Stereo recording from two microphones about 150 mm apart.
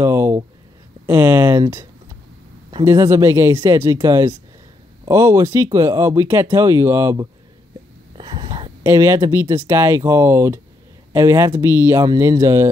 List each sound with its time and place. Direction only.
0.0 s a sound: 15° right (ahead or behind)
1.0 s speech: 15° right (ahead or behind)
2.8 s speech: 15° right (ahead or behind)
8.2 s whispering: 30° right (ahead or behind)
8.8 s speech: 20° right (ahead or behind)